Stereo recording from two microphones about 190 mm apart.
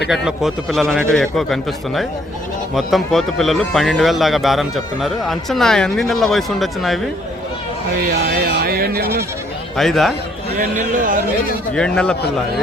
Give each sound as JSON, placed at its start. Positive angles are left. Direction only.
{"t": 0.1, "sound": "speech", "side_deg": 0}
{"t": 8.4, "sound": "speech", "side_deg": -50}
{"t": 9.7, "sound": "speech", "side_deg": 0}
{"t": 10.6, "sound": "speech", "side_deg": -45}
{"t": 11.7, "sound": "speech", "side_deg": 5}